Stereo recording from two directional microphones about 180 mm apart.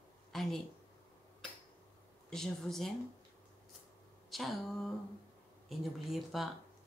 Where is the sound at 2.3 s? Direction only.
Centre (ahead or behind).